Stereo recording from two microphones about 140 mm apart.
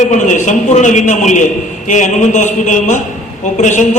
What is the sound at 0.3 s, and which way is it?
A man's voice, 60° left (ahead or behind).